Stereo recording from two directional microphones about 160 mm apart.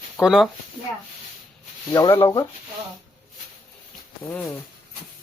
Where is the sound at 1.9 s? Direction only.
25° left (ahead or behind).